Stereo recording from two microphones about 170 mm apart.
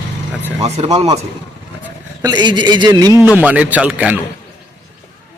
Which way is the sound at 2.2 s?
25° right (ahead or behind).